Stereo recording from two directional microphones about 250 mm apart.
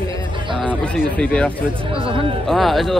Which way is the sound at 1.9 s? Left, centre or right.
Right.